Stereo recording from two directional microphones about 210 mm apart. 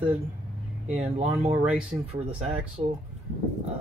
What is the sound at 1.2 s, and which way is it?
Speech, 30° right (ahead or behind).